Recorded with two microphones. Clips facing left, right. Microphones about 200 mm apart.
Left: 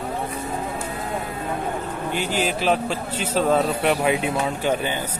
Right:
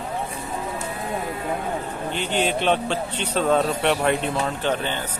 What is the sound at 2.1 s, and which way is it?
A man's voice, 5° left (ahead or behind).